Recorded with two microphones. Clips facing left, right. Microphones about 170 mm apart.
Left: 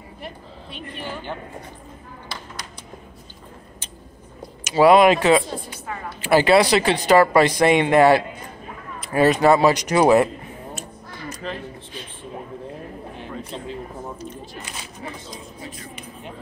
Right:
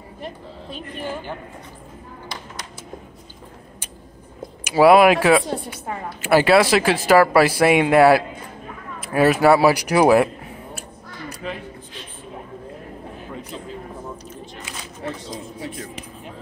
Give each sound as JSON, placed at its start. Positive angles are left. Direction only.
{"t": 0.2, "sound": "a woman's voice", "side_deg": -40}
{"t": 4.6, "sound": "speech", "side_deg": -10}